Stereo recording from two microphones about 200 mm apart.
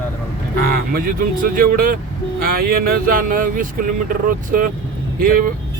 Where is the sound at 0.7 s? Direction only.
45° right (ahead or behind).